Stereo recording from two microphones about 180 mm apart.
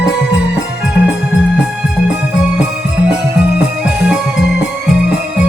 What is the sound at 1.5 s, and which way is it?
Music, 5° right (ahead or behind).